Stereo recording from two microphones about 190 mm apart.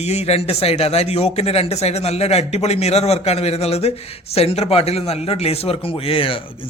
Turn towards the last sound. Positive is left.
turn(degrees=30)  # may be behind; listen again after turning